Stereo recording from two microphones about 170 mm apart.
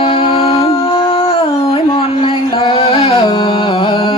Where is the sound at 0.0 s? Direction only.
30° left (ahead or behind).